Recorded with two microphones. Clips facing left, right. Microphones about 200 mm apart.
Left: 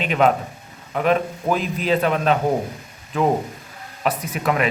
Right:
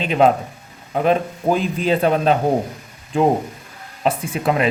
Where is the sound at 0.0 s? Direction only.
30° right (ahead or behind).